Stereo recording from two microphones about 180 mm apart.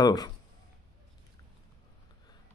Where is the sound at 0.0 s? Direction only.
20° left (ahead or behind).